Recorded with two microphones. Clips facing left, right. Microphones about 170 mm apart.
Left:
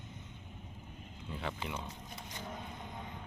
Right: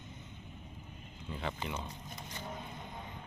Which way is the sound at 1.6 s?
5° left (ahead or behind).